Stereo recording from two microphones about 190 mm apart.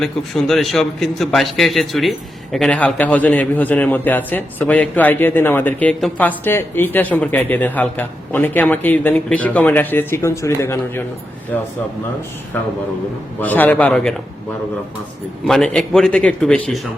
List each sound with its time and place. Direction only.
0.0 s a man's voice: centre (ahead or behind)
13.4 s a man's voice: 10° left (ahead or behind)
15.4 s a man's voice: 5° left (ahead or behind)